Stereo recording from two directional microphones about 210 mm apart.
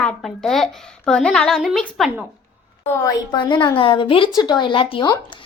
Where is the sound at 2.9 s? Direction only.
20° left (ahead or behind).